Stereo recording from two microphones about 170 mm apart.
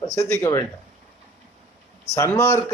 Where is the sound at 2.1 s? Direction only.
15° left (ahead or behind).